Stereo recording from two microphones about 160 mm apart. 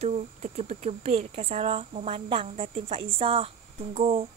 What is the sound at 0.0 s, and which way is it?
A woman's voice, 45° right (ahead or behind).